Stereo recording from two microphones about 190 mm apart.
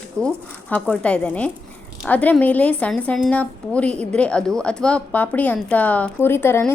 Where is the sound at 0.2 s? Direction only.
15° right (ahead or behind).